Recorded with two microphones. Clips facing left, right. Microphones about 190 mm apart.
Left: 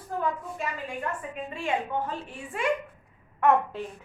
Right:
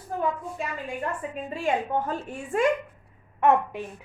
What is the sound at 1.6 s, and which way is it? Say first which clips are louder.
A woman's voice: right 3 dB; 40° right (ahead or behind).